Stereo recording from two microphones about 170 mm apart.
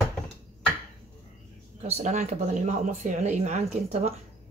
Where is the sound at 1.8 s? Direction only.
40° right (ahead or behind).